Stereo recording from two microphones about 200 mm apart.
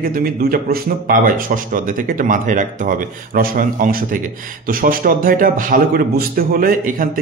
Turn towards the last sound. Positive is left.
turn(degrees=-45)  # may be behind; listen again after turning